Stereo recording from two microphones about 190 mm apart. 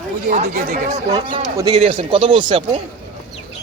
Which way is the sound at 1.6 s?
30° right (ahead or behind).